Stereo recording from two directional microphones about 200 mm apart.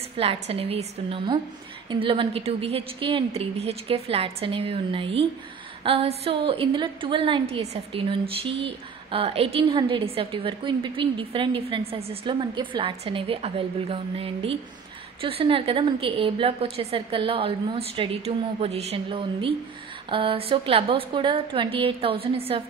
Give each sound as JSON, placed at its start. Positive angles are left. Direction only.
{"t": 0.2, "sound": "a woman's voice", "side_deg": -30}